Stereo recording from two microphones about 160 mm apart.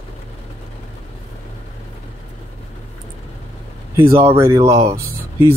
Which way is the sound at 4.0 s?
15° right (ahead or behind).